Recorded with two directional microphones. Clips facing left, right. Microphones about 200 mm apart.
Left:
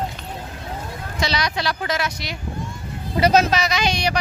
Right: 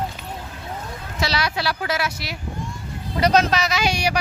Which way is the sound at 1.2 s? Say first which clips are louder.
Even; 5° right (ahead or behind).